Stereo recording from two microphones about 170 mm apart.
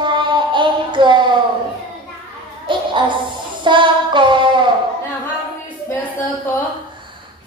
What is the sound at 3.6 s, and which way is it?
Child singing, 30° right (ahead or behind).